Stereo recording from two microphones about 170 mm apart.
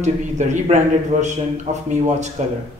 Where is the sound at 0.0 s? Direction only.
45° right (ahead or behind).